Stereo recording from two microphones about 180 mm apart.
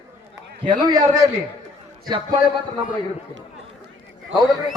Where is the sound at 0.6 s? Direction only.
25° right (ahead or behind).